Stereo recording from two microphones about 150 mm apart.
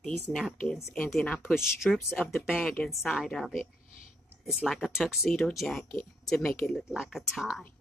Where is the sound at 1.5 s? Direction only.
5° right (ahead or behind).